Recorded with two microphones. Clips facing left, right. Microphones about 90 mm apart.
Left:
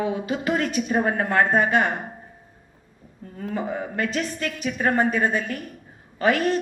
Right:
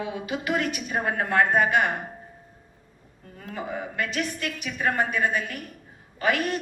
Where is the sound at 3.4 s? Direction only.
35° left (ahead or behind).